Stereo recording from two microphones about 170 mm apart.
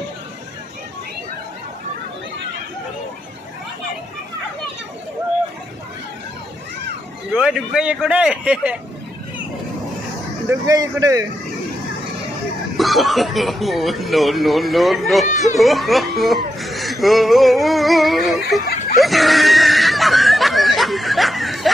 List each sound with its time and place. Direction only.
7.3 s speech: 5° right (ahead or behind)
10.5 s speech: 20° right (ahead or behind)
12.7 s speech: centre (ahead or behind)
16.5 s music: centre (ahead or behind)
18.9 s a sound: centre (ahead or behind)